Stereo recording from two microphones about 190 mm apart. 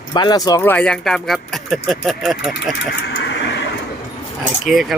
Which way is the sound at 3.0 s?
65° left (ahead or behind).